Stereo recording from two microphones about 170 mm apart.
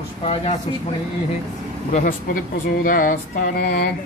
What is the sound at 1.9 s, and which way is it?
Speech, 50° left (ahead or behind).